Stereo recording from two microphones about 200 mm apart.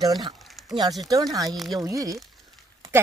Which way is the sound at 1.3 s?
20° right (ahead or behind).